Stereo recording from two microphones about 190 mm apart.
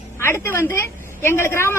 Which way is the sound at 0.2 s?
10° left (ahead or behind).